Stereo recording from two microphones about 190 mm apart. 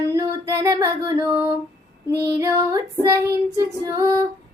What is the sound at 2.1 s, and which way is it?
Female singing, 60° right (ahead or behind).